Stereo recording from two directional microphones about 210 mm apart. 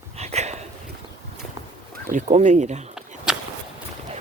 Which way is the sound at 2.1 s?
35° right (ahead or behind).